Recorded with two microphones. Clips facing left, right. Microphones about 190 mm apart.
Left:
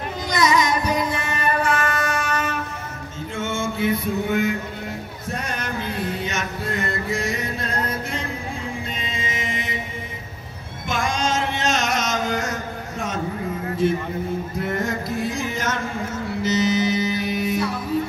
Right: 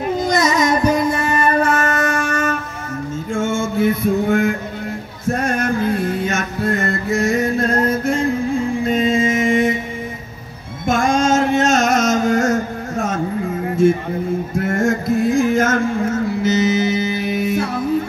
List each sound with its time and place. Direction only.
0.2 s music: 45° right (ahead or behind)
3.3 s mantra: 45° right (ahead or behind)
4.3 s speech: 50° right (ahead or behind)
5.3 s mantra: 50° right (ahead or behind)
10.9 s music: 45° right (ahead or behind)
13.8 s a sound: 50° right (ahead or behind)
14.7 s music: 45° right (ahead or behind)